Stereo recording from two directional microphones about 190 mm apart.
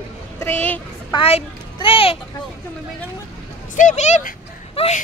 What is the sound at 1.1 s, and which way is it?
Speech, 30° left (ahead or behind).